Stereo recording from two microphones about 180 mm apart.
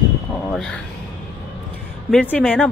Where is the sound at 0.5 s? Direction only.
Centre (ahead or behind).